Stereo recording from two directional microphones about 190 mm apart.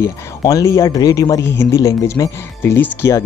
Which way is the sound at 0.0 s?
20° left (ahead or behind).